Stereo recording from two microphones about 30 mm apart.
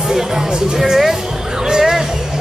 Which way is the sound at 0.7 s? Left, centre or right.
Centre.